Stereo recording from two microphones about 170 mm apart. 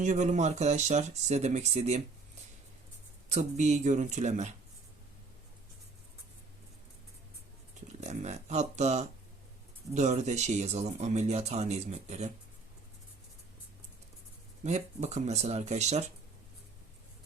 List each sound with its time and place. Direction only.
0.0 s speech: 45° right (ahead or behind)
3.2 s speech: 40° right (ahead or behind)
8.0 s speech: 40° right (ahead or behind)
14.6 s speech: 40° right (ahead or behind)